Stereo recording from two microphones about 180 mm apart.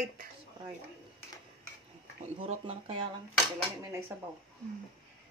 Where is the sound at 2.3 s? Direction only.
35° right (ahead or behind).